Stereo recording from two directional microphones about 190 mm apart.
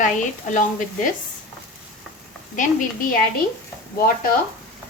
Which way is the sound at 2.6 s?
45° left (ahead or behind).